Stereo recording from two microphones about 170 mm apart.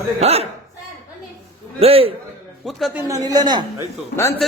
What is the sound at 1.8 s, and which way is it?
Speech, 35° right (ahead or behind).